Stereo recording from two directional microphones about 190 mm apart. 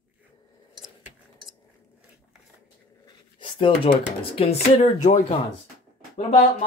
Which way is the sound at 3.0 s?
25° left (ahead or behind).